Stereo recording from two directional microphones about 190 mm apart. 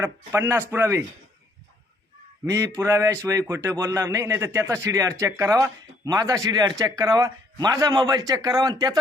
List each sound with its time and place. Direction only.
0.0 s a man's voice: 15° right (ahead or behind)
2.4 s a man's voice: 15° right (ahead or behind)